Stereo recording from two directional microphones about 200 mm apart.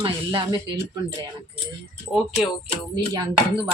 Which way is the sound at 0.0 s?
25° right (ahead or behind).